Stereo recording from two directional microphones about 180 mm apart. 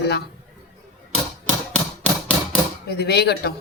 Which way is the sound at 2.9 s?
65° left (ahead or behind).